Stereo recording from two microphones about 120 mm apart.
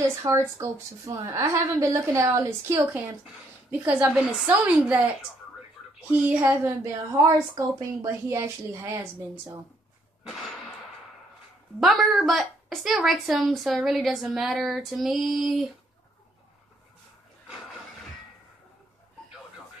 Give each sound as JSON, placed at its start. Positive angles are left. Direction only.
{"t": 0.3, "sound": "a woman's voice", "side_deg": -25}
{"t": 3.8, "sound": "a woman's voice", "side_deg": -10}
{"t": 11.8, "sound": "a woman's voice", "side_deg": 0}